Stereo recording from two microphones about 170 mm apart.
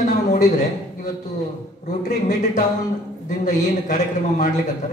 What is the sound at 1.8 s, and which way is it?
A man's voice, 45° left (ahead or behind).